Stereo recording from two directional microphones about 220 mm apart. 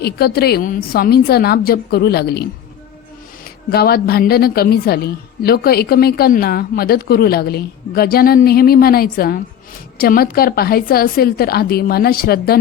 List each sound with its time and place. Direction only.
0.0 s a woman's voice: 45° left (ahead or behind)
3.4 s a woman's voice: 45° left (ahead or behind)